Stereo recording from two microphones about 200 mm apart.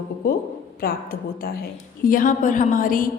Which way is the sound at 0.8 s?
50° left (ahead or behind).